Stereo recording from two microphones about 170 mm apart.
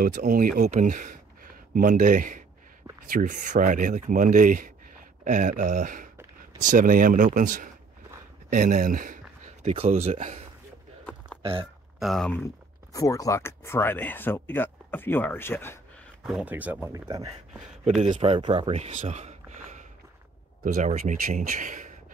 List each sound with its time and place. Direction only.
0.0 s speech: 55° right (ahead or behind)
12.0 s speech: centre (ahead or behind)
12.9 s speech: 20° left (ahead or behind)
16.3 s speech: 10° right (ahead or behind)
18.0 s speech: 40° right (ahead or behind)